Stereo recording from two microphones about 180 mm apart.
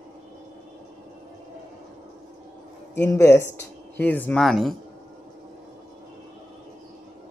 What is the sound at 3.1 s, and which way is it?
Speech, 15° left (ahead or behind).